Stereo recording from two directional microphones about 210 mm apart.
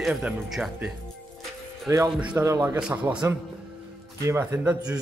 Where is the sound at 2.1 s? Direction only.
5° right (ahead or behind).